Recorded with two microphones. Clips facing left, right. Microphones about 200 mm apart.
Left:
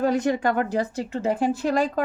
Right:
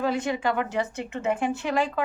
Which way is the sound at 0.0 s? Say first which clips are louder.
Left 4 dB; 40° left (ahead or behind).